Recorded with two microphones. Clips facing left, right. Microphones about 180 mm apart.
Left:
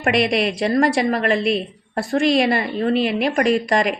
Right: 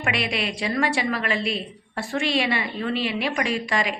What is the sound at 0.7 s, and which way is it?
A woman's voice, 40° left (ahead or behind).